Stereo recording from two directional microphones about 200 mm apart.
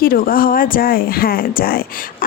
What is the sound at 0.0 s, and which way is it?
Speech, 45° left (ahead or behind).